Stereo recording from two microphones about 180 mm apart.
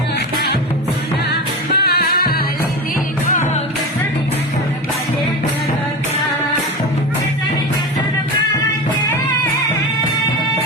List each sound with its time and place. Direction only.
1.3 s music: 65° left (ahead or behind)